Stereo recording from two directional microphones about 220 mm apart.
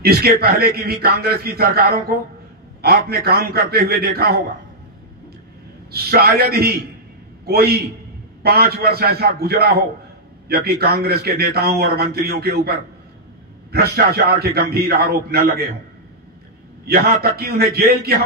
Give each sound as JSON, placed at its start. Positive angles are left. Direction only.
{"t": 0.0, "sound": "a man's voice", "side_deg": -45}
{"t": 5.9, "sound": "a man's voice", "side_deg": -45}
{"t": 16.8, "sound": "a man's voice", "side_deg": -45}